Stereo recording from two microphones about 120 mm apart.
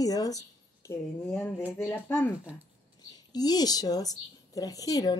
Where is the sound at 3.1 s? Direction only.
35° left (ahead or behind).